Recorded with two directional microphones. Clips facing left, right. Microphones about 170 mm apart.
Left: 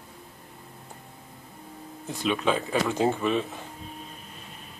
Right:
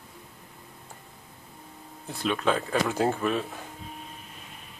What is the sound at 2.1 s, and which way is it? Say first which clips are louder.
Speech: left 1 dB; 10° left (ahead or behind).